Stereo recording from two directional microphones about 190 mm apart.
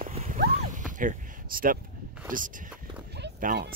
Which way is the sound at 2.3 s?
45° right (ahead or behind).